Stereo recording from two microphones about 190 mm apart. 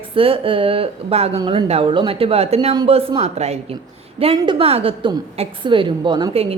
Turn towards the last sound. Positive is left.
turn(degrees=-30)  # may be behind; listen again after turning